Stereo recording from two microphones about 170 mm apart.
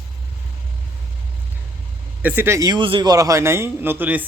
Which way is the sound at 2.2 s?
10° right (ahead or behind).